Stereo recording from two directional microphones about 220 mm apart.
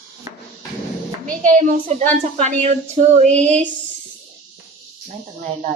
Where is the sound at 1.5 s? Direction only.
35° right (ahead or behind).